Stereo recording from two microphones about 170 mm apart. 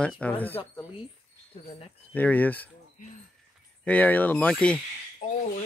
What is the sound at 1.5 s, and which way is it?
Speech, 35° left (ahead or behind).